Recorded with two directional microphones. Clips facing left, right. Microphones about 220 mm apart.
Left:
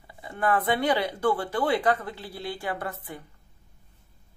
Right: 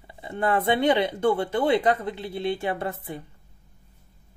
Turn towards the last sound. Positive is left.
turn(degrees=-25)  # may be behind; listen again after turning